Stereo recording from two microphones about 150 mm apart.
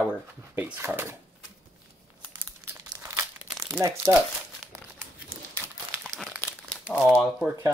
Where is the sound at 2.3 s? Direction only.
15° right (ahead or behind).